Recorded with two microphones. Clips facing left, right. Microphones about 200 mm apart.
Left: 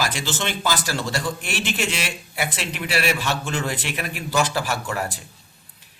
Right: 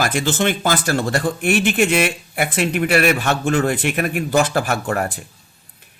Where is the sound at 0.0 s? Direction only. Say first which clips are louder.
Right 7 dB; 55° right (ahead or behind).